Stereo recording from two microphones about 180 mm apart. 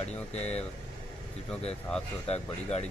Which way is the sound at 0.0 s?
35° left (ahead or behind).